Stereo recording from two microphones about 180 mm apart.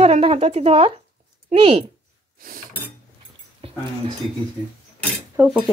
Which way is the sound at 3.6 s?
30° right (ahead or behind).